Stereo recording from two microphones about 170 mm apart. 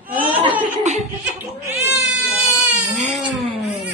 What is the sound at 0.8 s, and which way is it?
Laughter, 45° right (ahead or behind).